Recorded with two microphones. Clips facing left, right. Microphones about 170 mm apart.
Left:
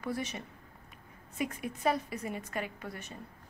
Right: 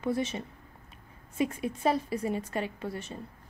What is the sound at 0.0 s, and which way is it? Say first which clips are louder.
A woman's voice: right 6 dB; 25° right (ahead or behind).